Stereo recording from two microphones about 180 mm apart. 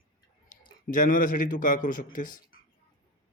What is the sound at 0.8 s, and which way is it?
Speech, 45° left (ahead or behind).